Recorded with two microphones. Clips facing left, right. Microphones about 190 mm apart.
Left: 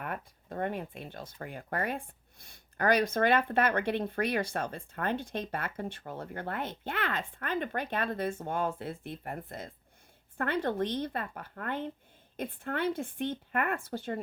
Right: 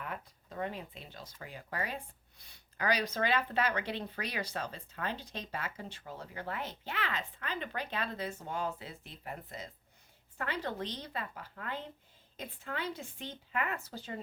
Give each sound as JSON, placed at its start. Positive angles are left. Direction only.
{"t": 0.0, "sound": "a woman's voice", "side_deg": 55}